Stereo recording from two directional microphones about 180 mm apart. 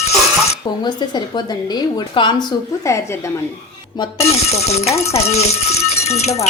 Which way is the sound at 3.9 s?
30° left (ahead or behind).